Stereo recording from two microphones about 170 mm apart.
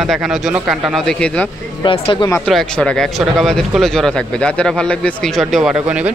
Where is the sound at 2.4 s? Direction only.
5° left (ahead or behind).